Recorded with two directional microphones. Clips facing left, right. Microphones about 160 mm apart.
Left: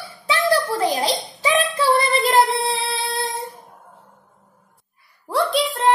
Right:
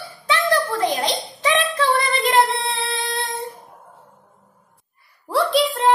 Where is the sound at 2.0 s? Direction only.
35° left (ahead or behind).